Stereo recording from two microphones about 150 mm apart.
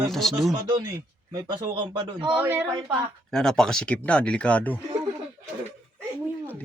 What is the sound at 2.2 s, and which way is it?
Speech, 10° right (ahead or behind).